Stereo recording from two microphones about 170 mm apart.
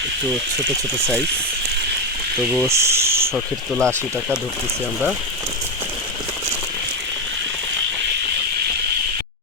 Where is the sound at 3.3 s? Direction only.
Centre (ahead or behind).